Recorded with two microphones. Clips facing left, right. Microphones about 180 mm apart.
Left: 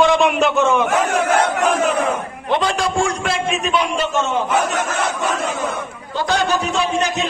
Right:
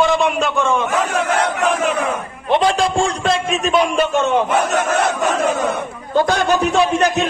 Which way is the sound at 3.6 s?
45° right (ahead or behind).